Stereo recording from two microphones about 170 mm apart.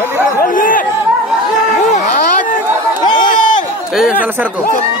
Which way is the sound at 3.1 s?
50° left (ahead or behind).